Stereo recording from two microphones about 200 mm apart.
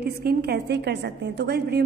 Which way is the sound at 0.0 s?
50° right (ahead or behind).